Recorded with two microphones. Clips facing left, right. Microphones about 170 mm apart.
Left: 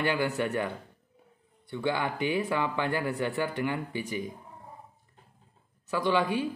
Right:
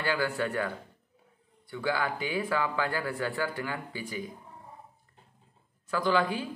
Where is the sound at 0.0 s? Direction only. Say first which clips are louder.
Left 2 dB; 20° left (ahead or behind).